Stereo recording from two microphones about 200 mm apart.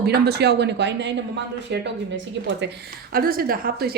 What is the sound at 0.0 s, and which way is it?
A woman's voice, 55° right (ahead or behind).